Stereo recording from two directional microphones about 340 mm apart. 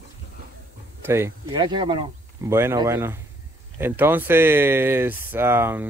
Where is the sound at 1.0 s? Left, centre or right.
Centre.